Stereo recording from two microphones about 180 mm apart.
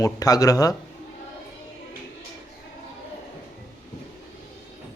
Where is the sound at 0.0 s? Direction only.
20° left (ahead or behind).